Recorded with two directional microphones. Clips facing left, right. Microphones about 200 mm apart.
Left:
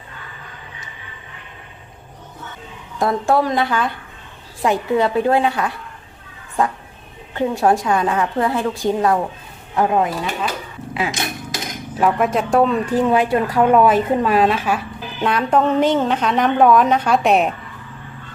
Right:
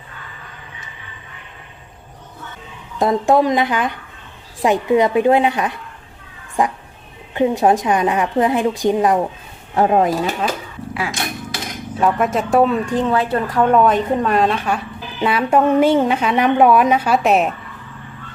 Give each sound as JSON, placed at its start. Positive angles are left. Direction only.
{"t": 3.0, "sound": "a woman's voice", "side_deg": -20}
{"t": 9.7, "sound": "speech", "side_deg": -30}
{"t": 10.9, "sound": "dog", "side_deg": 20}
{"t": 11.9, "sound": "speech", "side_deg": 0}
{"t": 15.2, "sound": "a woman's voice", "side_deg": -5}